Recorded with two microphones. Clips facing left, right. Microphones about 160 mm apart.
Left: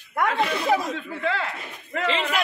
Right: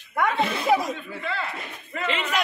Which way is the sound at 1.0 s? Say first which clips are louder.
Left 4 dB; 90° left.